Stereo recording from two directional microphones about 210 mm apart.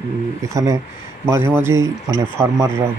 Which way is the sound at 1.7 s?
70° right (ahead or behind).